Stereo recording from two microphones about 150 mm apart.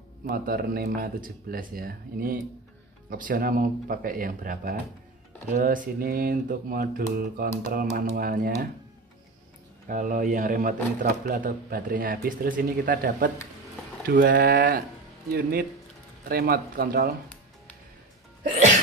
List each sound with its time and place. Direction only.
0.3 s speech: 85° right; by 8.5 s 70° right (ahead or behind)
9.8 s speech: 60° right (ahead or behind); by 17.1 s 80° right